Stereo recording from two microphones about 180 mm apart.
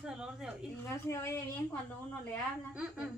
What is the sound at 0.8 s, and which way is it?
Speech, 15° left (ahead or behind).